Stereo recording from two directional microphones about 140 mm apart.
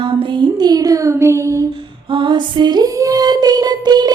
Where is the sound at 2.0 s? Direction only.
35° right (ahead or behind).